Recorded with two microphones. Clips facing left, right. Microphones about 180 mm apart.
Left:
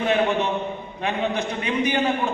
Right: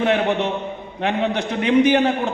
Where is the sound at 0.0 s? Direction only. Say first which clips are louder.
Right 2 dB; 70° right (ahead or behind).